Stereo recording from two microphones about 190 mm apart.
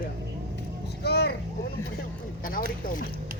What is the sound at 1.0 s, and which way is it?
Speech, 60° left (ahead or behind).